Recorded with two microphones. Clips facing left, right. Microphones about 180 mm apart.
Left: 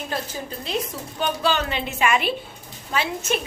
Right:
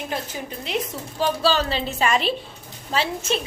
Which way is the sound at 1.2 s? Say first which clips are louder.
Right 2 dB; 30° right (ahead or behind).